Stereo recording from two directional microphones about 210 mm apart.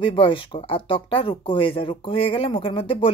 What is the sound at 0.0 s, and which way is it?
Speech, 25° left (ahead or behind).